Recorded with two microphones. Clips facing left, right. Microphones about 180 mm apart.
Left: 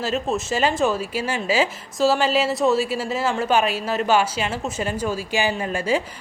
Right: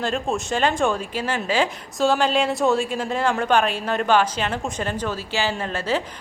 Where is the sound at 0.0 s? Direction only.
5° left (ahead or behind).